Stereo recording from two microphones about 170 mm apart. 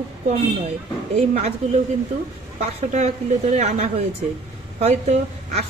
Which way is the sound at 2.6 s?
45° right (ahead or behind).